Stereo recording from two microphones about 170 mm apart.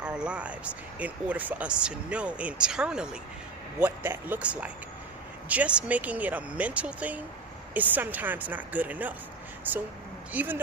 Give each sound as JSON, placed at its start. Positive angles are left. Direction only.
{"t": 0.0, "sound": "speech", "side_deg": -5}